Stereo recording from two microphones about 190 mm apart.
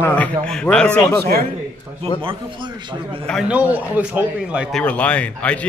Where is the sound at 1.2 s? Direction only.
55° right (ahead or behind).